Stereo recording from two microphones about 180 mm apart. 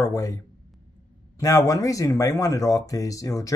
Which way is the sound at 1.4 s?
20° left (ahead or behind).